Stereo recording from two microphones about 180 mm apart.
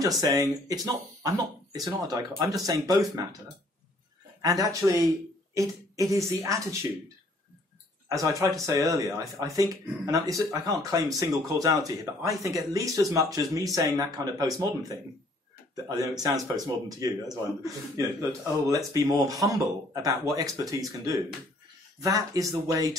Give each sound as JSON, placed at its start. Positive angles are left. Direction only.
{"t": 0.2, "sound": "speech", "side_deg": -20}
{"t": 4.4, "sound": "speech", "side_deg": -20}
{"t": 8.1, "sound": "speech", "side_deg": -15}